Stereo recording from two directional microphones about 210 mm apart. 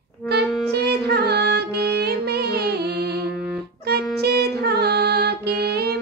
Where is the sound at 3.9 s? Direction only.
50° right (ahead or behind).